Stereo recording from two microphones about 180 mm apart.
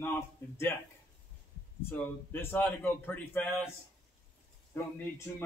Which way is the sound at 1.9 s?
10° left (ahead or behind).